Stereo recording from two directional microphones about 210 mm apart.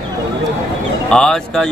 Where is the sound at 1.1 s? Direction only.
5° left (ahead or behind).